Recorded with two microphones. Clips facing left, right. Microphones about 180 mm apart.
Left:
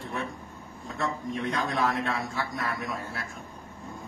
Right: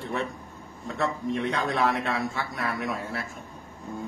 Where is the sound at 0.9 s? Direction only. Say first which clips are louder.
Right 3 dB; 70° right (ahead or behind).